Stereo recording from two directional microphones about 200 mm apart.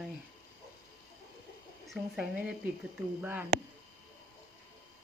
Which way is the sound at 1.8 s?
Centre (ahead or behind).